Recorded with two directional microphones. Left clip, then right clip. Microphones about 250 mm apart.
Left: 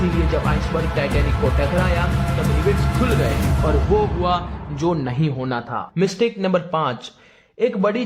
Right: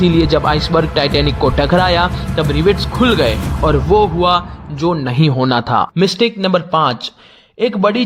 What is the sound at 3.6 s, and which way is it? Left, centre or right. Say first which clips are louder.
Speech: right 8 dB; right.